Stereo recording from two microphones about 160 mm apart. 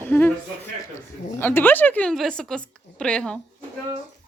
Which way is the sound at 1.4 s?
10° left (ahead or behind).